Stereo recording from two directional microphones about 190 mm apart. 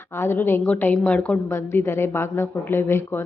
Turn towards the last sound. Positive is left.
turn(degrees=10)  # may be behind; listen again after turning